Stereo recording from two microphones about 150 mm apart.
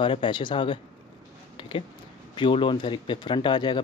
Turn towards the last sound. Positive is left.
turn(degrees=30)  # may be behind; listen again after turning